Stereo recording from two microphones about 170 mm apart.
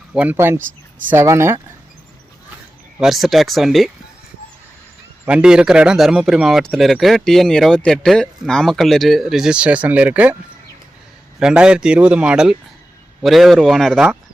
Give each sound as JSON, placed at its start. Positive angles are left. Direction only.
{"t": 0.1, "sound": "speech", "side_deg": -10}
{"t": 3.0, "sound": "speech", "side_deg": 0}
{"t": 5.2, "sound": "speech", "side_deg": -5}
{"t": 11.3, "sound": "speech", "side_deg": -5}